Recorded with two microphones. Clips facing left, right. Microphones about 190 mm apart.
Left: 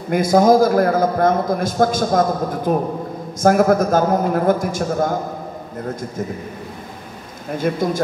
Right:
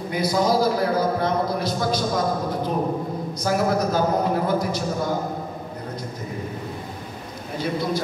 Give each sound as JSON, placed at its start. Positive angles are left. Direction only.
{"t": 0.1, "sound": "a man's voice", "side_deg": 50}
{"t": 7.5, "sound": "a man's voice", "side_deg": 50}